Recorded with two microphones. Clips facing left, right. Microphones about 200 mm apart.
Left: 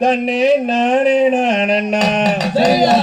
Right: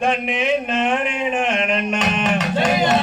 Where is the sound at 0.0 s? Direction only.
35° left (ahead or behind).